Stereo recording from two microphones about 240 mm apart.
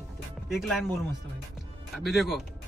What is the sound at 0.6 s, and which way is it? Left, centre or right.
Speech, centre.